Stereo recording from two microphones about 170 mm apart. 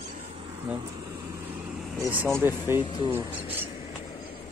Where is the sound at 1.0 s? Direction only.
15° right (ahead or behind).